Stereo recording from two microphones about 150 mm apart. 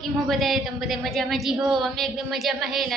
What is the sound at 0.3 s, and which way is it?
A woman's voice, centre (ahead or behind).